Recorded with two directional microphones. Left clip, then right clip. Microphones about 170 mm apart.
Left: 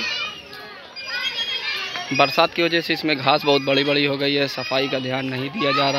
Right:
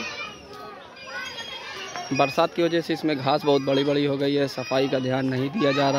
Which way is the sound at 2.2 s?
10° right (ahead or behind).